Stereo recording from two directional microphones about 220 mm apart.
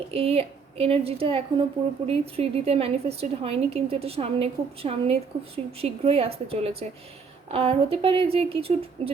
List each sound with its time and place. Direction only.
0.1 s a woman's voice: 25° right (ahead or behind)